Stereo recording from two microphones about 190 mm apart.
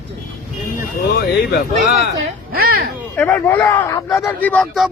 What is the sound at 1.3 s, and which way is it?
Speech, 55° left (ahead or behind).